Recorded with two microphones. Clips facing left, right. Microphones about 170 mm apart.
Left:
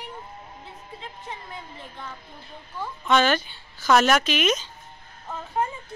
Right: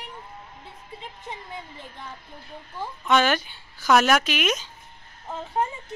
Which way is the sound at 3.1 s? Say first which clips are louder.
Even; 10° right (ahead or behind).